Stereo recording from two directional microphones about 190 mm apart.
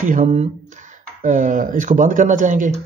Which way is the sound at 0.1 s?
40° right (ahead or behind).